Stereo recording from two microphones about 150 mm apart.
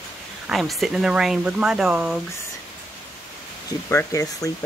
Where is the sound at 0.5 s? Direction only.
Centre (ahead or behind).